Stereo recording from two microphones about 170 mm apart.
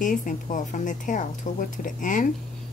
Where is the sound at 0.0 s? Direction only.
50° left (ahead or behind).